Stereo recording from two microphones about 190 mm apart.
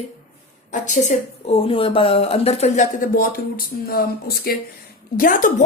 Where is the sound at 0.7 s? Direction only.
40° left (ahead or behind).